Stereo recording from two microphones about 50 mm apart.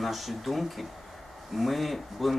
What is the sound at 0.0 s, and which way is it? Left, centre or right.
Speech, centre.